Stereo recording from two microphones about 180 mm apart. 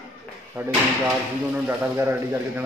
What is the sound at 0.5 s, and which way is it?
A man's voice, 15° right (ahead or behind).